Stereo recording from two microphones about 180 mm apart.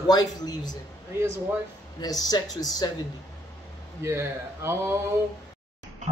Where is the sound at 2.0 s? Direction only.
20° left (ahead or behind).